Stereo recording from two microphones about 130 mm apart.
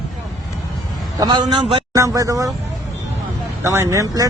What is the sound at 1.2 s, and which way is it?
Speech, 35° right (ahead or behind).